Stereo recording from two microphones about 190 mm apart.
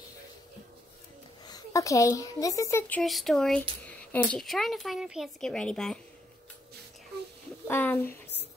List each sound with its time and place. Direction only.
1.4 s a woman's voice: 20° left (ahead or behind)
3.0 s speech: centre (ahead or behind)
7.6 s speech: 10° left (ahead or behind)